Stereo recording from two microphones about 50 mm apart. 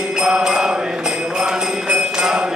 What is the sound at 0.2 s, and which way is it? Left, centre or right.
Music, centre.